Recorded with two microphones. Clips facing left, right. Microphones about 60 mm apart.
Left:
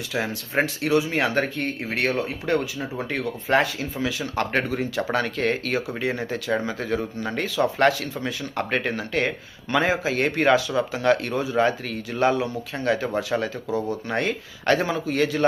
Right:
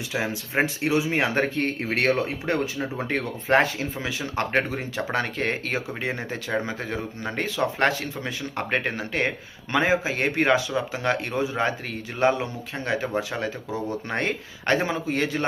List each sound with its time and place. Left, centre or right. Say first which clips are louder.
0.1 s speech: left 1 dB; centre